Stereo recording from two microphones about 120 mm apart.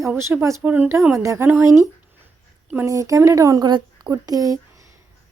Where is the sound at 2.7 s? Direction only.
25° right (ahead or behind).